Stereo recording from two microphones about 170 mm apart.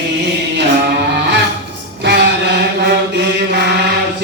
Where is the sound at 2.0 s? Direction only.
80° right.